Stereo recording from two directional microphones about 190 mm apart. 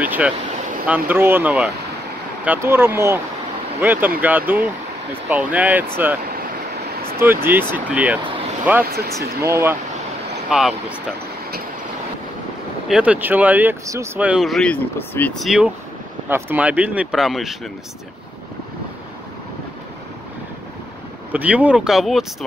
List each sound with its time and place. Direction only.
0.0 s speech: 10° right (ahead or behind)
7.2 s speech: 10° right (ahead or behind)
8.8 s speech: 55° right (ahead or behind)
9.4 s speech: 15° right (ahead or behind)
10.5 s speech: 5° right (ahead or behind)
12.8 s speech: 5° right (ahead or behind)
21.3 s speech: 10° right (ahead or behind)